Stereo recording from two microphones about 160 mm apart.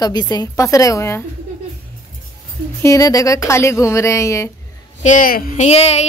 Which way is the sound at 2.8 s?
20° left (ahead or behind).